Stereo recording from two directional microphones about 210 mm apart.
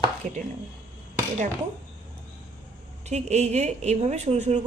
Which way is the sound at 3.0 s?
30° right (ahead or behind).